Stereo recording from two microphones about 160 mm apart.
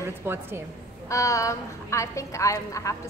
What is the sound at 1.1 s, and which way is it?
A woman's voice, 20° left (ahead or behind).